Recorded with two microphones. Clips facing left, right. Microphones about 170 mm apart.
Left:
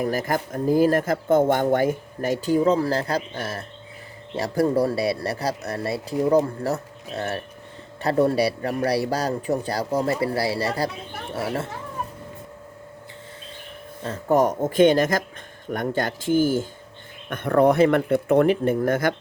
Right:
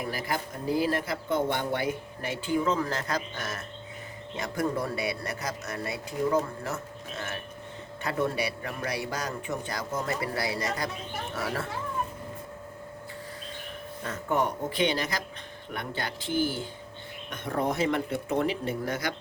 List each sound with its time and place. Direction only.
0.0 s speech: 45° left (ahead or behind); by 11.7 s 25° left (ahead or behind)
14.0 s speech: 35° left (ahead or behind)
17.2 s speech: 60° left (ahead or behind)